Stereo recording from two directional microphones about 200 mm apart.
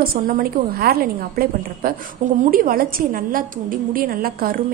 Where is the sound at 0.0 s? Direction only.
45° right (ahead or behind).